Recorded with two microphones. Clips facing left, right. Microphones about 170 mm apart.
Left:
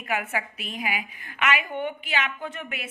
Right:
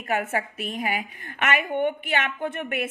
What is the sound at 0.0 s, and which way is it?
A woman's voice, 45° right (ahead or behind).